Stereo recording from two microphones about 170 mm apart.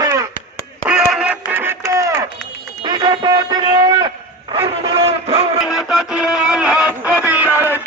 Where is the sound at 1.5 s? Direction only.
10° right (ahead or behind); by 5.6 s 35° right (ahead or behind).